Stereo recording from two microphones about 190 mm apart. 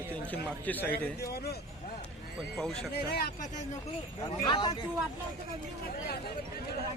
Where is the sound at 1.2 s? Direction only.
55° left (ahead or behind).